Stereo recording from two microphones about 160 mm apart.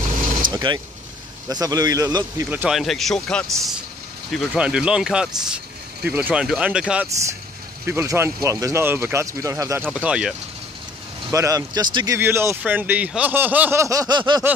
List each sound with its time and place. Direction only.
0.5 s vehicle: 25° right (ahead or behind)
1.5 s a man's voice: 25° right (ahead or behind)
2.5 s speech: 5° right (ahead or behind)
7.8 s speech: 15° right (ahead or behind)
9.8 s speech: 5° right (ahead or behind)
11.3 s a man's voice: 20° right (ahead or behind)
12.2 s speech: 15° right (ahead or behind)